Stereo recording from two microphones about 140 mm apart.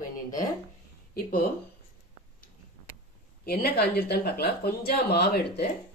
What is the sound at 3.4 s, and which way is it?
Speech, 90° left.